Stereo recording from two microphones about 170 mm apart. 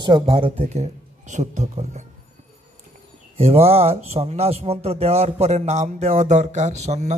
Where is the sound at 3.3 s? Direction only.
35° right (ahead or behind).